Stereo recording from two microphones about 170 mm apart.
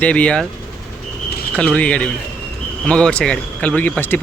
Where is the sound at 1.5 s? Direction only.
5° left (ahead or behind).